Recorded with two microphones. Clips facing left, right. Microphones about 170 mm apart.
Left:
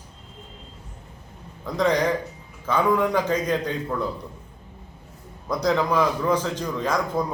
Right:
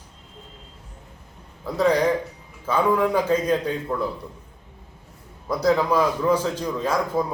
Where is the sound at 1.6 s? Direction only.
5° right (ahead or behind).